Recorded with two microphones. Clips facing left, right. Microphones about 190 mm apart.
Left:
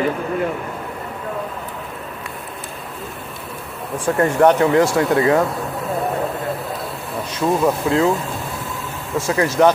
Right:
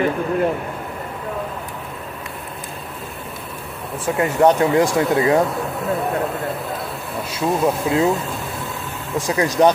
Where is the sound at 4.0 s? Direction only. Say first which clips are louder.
Left 1 dB; 10° right (ahead or behind).